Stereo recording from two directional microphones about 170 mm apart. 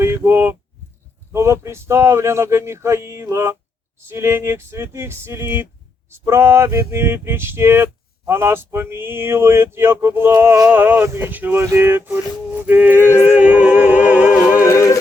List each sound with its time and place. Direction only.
0.0 s a sound: 15° right (ahead or behind)
1.3 s speech: 15° right (ahead or behind)
14.6 s music: 15° left (ahead or behind)